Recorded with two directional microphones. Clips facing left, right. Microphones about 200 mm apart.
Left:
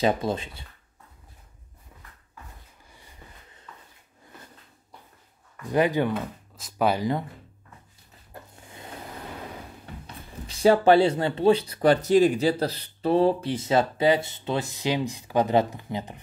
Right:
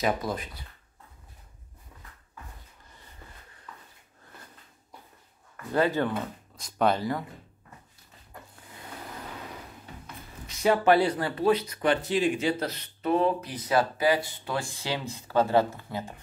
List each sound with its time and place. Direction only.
0.0 s speech: 25° left (ahead or behind)
5.7 s speech: 15° left (ahead or behind)
10.4 s speech: 30° left (ahead or behind)